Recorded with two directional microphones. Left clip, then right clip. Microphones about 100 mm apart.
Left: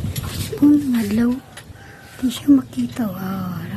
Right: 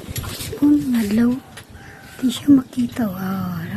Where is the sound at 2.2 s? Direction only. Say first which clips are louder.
Right 1 dB; 30° right (ahead or behind).